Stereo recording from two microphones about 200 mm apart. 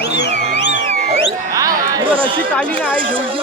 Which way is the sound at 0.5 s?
60° left (ahead or behind).